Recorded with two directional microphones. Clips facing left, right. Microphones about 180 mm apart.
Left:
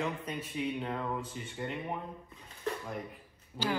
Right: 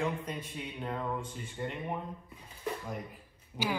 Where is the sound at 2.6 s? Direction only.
10° right (ahead or behind).